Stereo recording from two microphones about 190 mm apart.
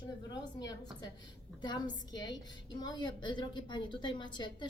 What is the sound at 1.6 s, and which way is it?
A woman's voice, 20° left (ahead or behind).